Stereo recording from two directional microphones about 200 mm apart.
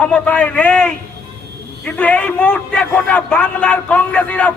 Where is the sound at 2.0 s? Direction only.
5° left (ahead or behind).